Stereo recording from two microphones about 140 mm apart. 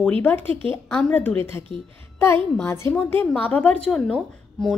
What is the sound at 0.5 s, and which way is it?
Speech, 40° right (ahead or behind).